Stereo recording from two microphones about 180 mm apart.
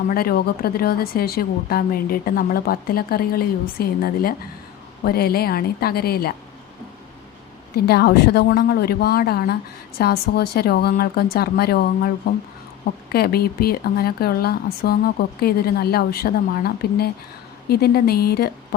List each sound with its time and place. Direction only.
0.1 s speech: 55° left (ahead or behind)
7.9 s speech: 65° left (ahead or behind)